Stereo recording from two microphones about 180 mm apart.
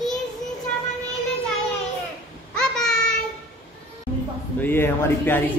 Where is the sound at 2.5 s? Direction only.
5° left (ahead or behind).